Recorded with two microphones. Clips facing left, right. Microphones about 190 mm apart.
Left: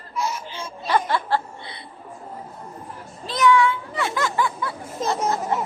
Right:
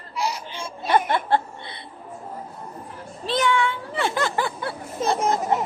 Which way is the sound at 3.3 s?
30° right (ahead or behind).